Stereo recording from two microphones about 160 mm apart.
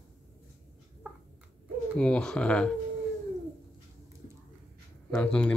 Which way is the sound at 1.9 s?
5° left (ahead or behind).